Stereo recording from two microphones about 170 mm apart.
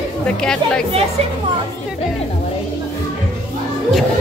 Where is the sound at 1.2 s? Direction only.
35° right (ahead or behind).